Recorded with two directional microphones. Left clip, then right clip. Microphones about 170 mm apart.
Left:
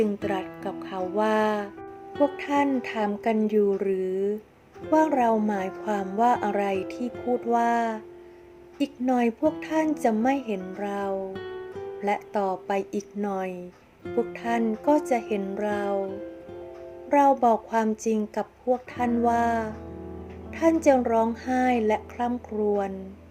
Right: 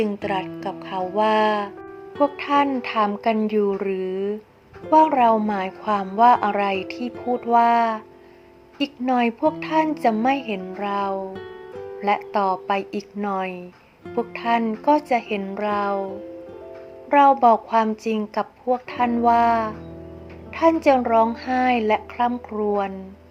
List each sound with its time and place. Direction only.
0.3 s a woman's voice: 10° left (ahead or behind)
7.2 s speech: centre (ahead or behind)
7.4 s a woman's voice: 15° left (ahead or behind)
17.1 s a woman's voice: 15° left (ahead or behind)